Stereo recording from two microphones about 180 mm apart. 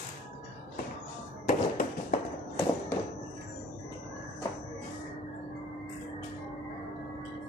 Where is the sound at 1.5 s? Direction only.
50° left (ahead or behind).